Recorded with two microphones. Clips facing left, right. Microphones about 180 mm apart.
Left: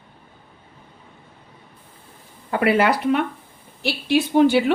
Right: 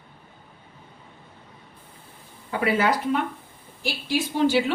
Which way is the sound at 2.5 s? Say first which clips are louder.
Left 4 dB; 65° left (ahead or behind).